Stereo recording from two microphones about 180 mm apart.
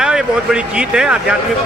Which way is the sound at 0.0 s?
5° right (ahead or behind).